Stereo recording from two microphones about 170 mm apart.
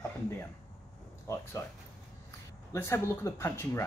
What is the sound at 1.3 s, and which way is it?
Speech, 15° left (ahead or behind).